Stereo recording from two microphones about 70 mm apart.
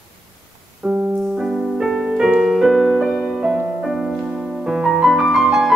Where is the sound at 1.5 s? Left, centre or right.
Centre.